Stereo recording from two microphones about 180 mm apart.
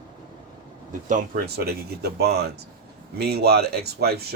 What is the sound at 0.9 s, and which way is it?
Speech, 45° right (ahead or behind).